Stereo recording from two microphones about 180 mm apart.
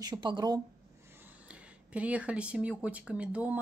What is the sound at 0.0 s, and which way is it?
Speech, 25° right (ahead or behind).